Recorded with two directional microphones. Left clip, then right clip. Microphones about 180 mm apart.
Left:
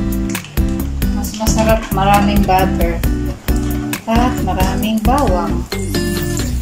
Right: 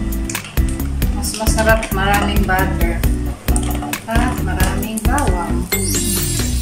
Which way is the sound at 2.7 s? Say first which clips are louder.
Left 3 dB; centre (ahead or behind).